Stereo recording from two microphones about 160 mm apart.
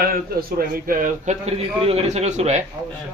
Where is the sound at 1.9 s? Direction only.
45° right (ahead or behind).